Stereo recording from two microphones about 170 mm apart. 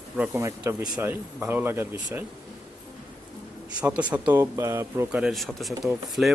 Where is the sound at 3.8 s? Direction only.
10° right (ahead or behind).